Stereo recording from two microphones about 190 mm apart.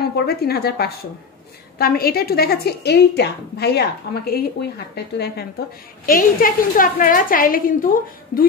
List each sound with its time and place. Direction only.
0.1 s a woman's voice: 55° left (ahead or behind)
6.0 s a woman's voice: 45° left (ahead or behind)